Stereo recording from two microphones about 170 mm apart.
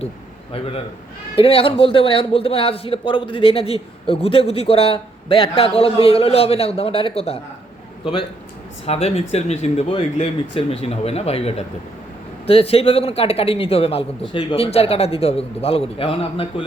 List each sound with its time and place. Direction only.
1.4 s a man's voice: 35° left (ahead or behind)
8.9 s a man's voice: 35° left (ahead or behind)